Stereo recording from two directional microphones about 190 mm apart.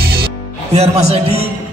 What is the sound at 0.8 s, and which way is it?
Music, 35° right (ahead or behind).